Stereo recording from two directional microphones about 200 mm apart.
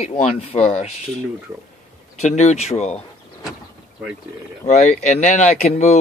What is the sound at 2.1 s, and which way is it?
Speech, 35° left (ahead or behind).